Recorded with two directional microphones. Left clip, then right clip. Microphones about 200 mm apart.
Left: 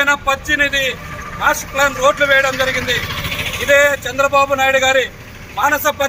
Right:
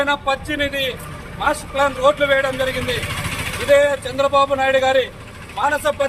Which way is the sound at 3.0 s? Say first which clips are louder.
Left 3 dB; 45° right (ahead or behind).